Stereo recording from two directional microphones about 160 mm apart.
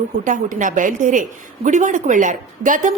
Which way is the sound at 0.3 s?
55° right (ahead or behind).